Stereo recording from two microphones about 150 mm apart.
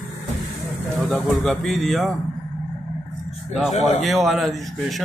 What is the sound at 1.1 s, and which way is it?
A man's voice, 5° left (ahead or behind).